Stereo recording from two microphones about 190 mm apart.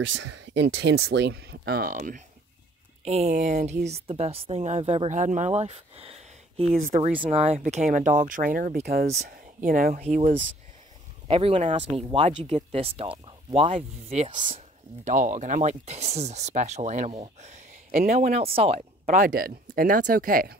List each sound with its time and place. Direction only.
0.2 s speech: 70° right (ahead or behind); by 2.2 s 45° right (ahead or behind)
3.1 s speech: 35° right (ahead or behind)
6.7 s speech: 45° right (ahead or behind)
7.2 s speech: 35° right (ahead or behind)
10.0 s speech: 35° right (ahead or behind)
15.0 s speech: 40° right (ahead or behind)
18.3 s speech: 30° right (ahead or behind); by 20.5 s 45° right (ahead or behind)